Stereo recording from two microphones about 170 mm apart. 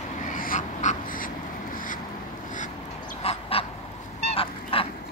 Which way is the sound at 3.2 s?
35° left (ahead or behind).